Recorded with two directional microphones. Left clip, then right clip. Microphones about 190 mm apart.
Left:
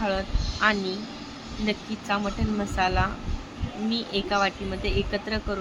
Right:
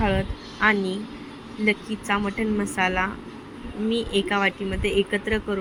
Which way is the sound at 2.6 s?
15° right (ahead or behind).